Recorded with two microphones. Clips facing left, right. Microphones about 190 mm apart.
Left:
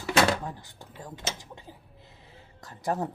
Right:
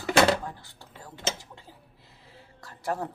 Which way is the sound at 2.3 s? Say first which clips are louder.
Even; 20° left (ahead or behind).